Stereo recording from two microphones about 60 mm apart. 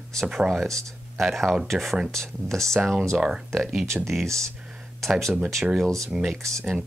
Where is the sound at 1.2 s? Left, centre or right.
Centre.